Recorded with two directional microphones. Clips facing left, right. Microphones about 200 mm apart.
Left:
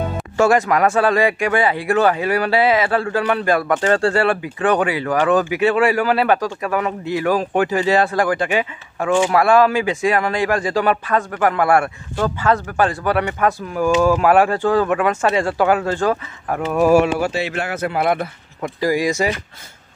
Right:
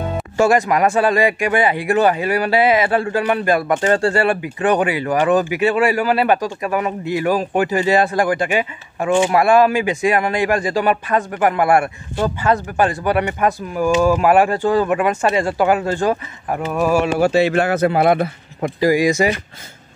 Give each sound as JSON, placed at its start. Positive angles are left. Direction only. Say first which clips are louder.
{"t": 0.4, "sound": "speech", "louder": "even", "side_deg": -10}
{"t": 17.2, "sound": "speech", "louder": "right 7 dB", "side_deg": -45}
{"t": 18.9, "sound": "speech", "louder": "right 3 dB", "side_deg": 0}